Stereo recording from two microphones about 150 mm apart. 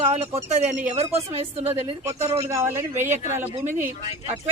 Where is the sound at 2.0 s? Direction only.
15° right (ahead or behind).